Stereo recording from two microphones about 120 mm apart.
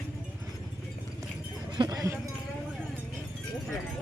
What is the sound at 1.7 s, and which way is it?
Cowbell, 35° right (ahead or behind).